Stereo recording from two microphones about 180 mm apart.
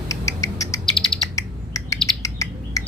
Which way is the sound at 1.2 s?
20° left (ahead or behind).